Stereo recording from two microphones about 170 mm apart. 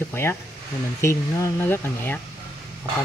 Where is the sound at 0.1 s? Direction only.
15° left (ahead or behind).